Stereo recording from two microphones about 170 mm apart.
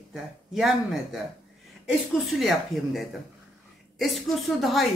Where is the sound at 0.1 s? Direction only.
5° right (ahead or behind).